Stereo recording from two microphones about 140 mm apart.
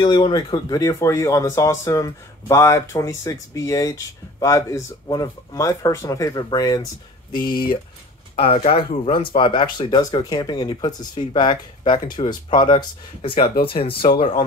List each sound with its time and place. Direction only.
0.0 s speech: 35° left (ahead or behind)